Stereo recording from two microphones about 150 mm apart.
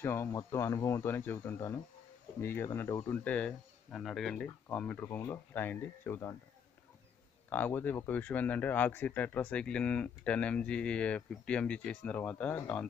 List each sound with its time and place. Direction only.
0.0 s speech: 20° left (ahead or behind)
3.3 s speech: 5° left (ahead or behind)
7.4 s speech: 15° left (ahead or behind)